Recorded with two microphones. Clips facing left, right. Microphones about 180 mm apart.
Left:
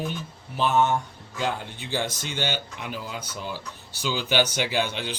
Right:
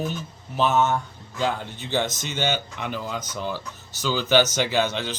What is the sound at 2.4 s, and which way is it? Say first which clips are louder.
Speech: right 4 dB; 50° right (ahead or behind).